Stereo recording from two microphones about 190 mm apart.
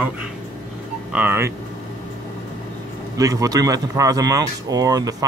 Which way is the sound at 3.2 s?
20° right (ahead or behind).